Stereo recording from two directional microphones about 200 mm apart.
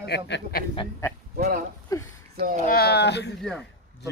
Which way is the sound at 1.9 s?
15° left (ahead or behind).